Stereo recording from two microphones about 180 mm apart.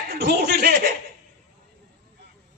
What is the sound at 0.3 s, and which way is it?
Speech, 60° right (ahead or behind).